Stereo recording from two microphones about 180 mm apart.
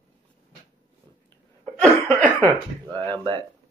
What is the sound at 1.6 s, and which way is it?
Laughter, 5° left (ahead or behind).